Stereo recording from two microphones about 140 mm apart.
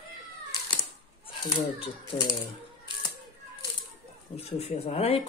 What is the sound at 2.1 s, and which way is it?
Speech, 25° left (ahead or behind).